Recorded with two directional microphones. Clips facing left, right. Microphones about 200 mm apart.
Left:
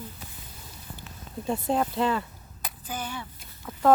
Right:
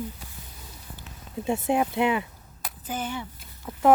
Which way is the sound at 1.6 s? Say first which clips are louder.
Right 2 dB; 10° right (ahead or behind).